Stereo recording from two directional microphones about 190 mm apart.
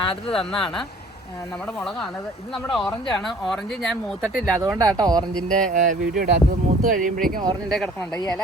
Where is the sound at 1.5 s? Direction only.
5° left (ahead or behind).